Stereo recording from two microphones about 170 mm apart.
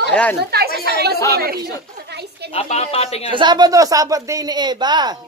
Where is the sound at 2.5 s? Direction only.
40° left (ahead or behind).